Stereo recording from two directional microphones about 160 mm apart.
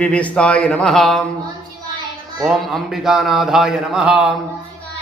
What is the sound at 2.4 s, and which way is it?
Speech, centre (ahead or behind).